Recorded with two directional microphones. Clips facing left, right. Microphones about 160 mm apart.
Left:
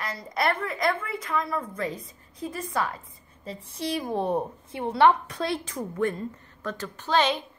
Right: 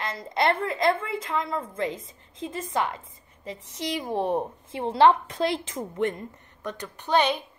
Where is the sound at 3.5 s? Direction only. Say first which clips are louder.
Left 1 dB; 90° right.